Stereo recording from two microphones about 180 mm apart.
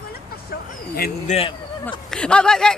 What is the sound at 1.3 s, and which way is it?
Speech, 30° left (ahead or behind).